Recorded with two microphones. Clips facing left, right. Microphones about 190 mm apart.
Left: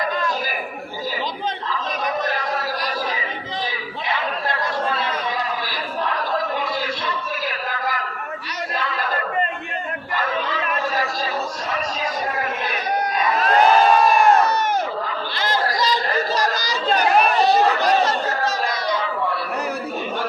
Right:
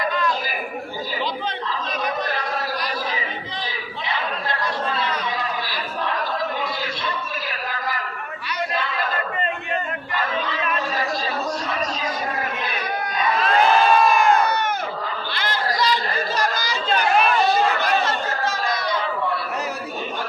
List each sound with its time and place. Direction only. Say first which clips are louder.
13.3 s crowd: left 2 dB; 40° left (ahead or behind)
15.5 s chatter: left 1 dB; 40° left (ahead or behind)